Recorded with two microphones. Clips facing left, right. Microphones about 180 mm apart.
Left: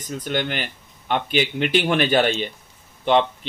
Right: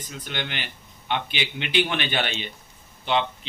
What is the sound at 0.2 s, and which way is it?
Speech, 45° left (ahead or behind).